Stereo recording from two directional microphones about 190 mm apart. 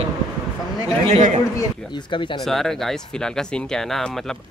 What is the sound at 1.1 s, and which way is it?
Speech, 40° right (ahead or behind).